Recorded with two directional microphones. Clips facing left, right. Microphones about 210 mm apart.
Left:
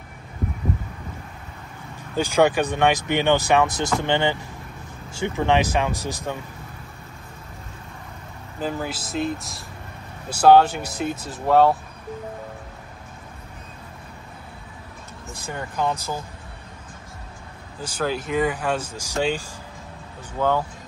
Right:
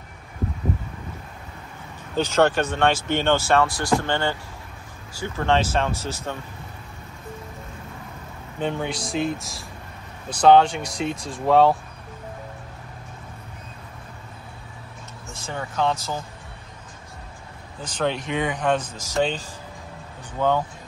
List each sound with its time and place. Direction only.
2.1 s speech: 10° left (ahead or behind)
8.5 s speech: 5° left (ahead or behind)
15.5 s speech: 10° left (ahead or behind)
17.8 s speech: 5° left (ahead or behind)